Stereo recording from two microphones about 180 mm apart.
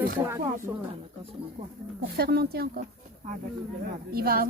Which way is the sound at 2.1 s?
60° right (ahead or behind).